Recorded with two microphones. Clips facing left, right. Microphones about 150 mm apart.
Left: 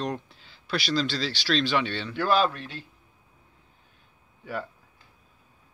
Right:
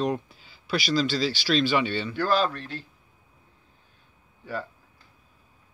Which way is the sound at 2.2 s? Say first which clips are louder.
Left 1 dB; 15° left (ahead or behind).